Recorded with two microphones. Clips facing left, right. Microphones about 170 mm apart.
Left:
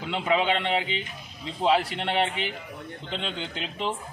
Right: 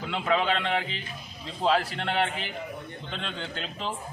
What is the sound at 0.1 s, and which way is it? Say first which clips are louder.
Speech: left 2 dB; 20° left (ahead or behind).